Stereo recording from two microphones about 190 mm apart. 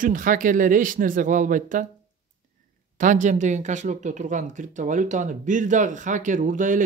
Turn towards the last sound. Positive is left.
turn(degrees=-45)  # may be behind; listen again after turning